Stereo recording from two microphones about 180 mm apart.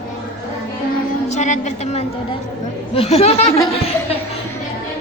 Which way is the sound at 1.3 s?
40° left (ahead or behind).